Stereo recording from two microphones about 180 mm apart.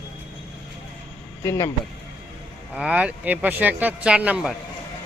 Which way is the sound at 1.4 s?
15° left (ahead or behind).